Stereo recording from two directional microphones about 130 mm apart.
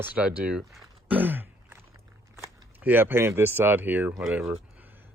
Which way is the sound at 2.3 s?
20° right (ahead or behind).